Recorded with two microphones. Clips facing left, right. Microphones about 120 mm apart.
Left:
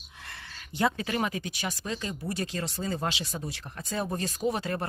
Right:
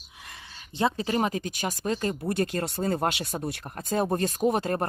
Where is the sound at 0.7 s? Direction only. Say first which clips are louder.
Right 2 dB; 30° right (ahead or behind).